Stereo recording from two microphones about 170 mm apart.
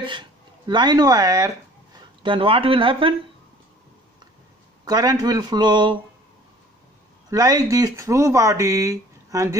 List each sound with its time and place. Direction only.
0.0 s speech: 25° right (ahead or behind)
4.8 s speech: 25° right (ahead or behind)
7.2 s speech: 20° right (ahead or behind)